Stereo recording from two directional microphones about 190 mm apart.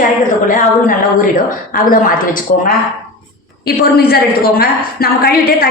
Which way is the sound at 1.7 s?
45° left (ahead or behind).